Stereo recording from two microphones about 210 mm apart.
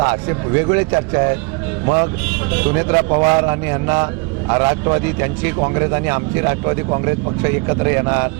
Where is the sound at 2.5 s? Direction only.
15° right (ahead or behind).